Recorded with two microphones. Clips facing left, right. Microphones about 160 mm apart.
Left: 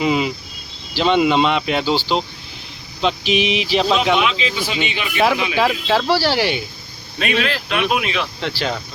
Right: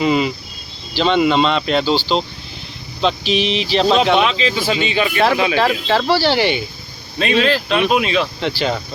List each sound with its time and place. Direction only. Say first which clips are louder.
0.0 s speech: right 2 dB; 5° left (ahead or behind)
4.2 s speech: right 3 dB; 35° right (ahead or behind)
4.9 s speech: right 1 dB; 10° left (ahead or behind)
7.2 s speech: right 5 dB; 30° right (ahead or behind)
8.4 s speech: right 4 dB; centre (ahead or behind)